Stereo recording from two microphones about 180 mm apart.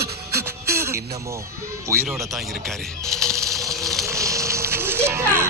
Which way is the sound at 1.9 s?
15° right (ahead or behind).